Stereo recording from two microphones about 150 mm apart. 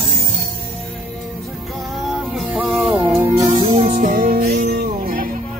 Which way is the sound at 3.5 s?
35° right (ahead or behind).